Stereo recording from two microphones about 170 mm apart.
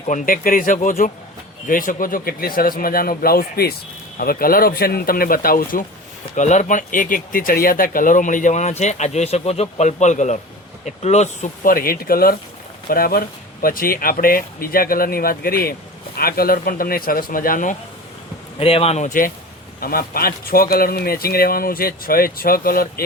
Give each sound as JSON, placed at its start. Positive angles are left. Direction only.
{"t": 0.0, "sound": "a man's voice", "side_deg": 45}
{"t": 6.3, "sound": "a man's voice", "side_deg": 45}
{"t": 18.6, "sound": "speech", "side_deg": 35}
{"t": 19.8, "sound": "a man's voice", "side_deg": 60}